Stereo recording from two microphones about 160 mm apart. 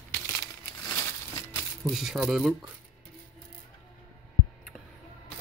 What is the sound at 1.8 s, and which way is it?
Speech, centre (ahead or behind).